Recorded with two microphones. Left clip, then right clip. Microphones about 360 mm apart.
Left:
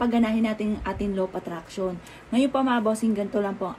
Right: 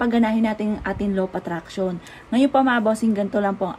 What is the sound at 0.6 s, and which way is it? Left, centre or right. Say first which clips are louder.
Speech: right 3 dB; right.